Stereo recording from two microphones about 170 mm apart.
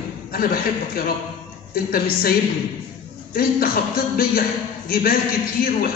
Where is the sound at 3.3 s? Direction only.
60° left (ahead or behind).